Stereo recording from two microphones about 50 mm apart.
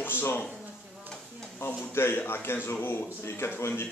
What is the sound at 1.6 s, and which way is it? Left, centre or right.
Speech, left.